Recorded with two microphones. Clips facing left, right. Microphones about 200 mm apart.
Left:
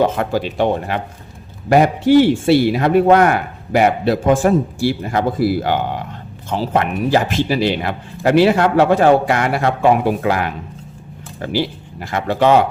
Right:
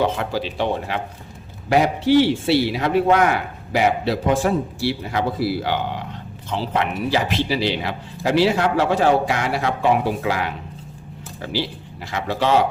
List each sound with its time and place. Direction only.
0.0 s a man's voice: 50° left (ahead or behind)